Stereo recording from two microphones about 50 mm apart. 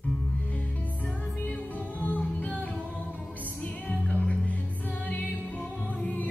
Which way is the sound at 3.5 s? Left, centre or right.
Centre.